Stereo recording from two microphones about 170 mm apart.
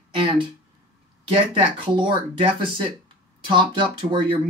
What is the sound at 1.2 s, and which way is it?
Speech, 30° right (ahead or behind).